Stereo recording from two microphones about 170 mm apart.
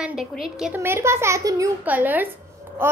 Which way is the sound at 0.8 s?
15° right (ahead or behind).